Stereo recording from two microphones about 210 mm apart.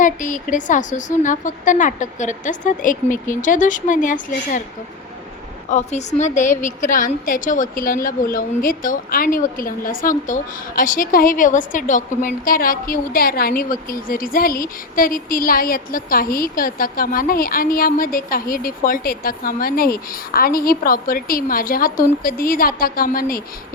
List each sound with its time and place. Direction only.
0.0 s a woman's voice: 35° left (ahead or behind)
5.7 s a woman's voice: 35° left (ahead or behind)